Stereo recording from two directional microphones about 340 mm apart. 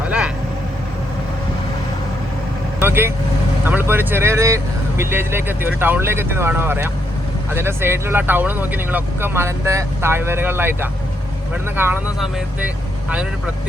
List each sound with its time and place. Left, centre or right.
0.0 s vehicle: centre
2.8 s speech: centre